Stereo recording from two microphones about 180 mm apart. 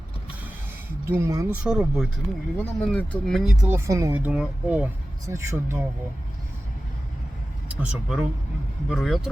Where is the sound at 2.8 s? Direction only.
5° left (ahead or behind).